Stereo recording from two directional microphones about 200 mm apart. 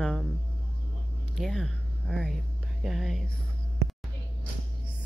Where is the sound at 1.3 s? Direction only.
Centre (ahead or behind).